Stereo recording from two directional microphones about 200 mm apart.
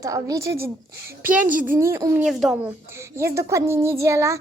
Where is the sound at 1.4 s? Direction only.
45° right (ahead or behind).